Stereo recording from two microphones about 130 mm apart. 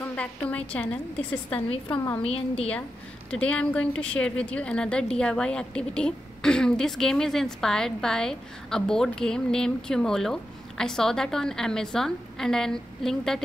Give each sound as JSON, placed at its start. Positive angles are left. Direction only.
{"t": 0.1, "sound": "a woman's voice", "side_deg": 10}
{"t": 2.2, "sound": "a woman's voice", "side_deg": 50}
{"t": 3.3, "sound": "speech", "side_deg": 10}